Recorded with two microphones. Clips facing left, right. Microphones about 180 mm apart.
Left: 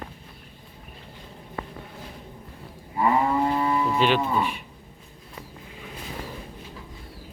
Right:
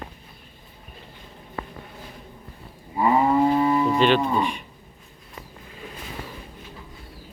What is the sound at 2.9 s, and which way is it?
Moo, 15° right (ahead or behind).